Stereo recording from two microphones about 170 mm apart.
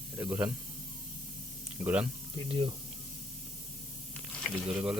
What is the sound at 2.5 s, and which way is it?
Speech, 30° right (ahead or behind).